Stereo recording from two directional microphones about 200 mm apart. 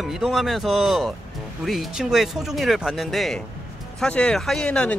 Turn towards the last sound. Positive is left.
turn(degrees=5)  # may be behind; listen again after turning